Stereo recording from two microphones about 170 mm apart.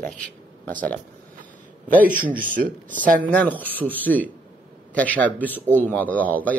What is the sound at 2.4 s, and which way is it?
Speech, 55° right (ahead or behind).